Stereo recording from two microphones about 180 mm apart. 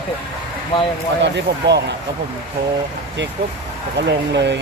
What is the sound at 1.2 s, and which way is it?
Speech, 70° right (ahead or behind).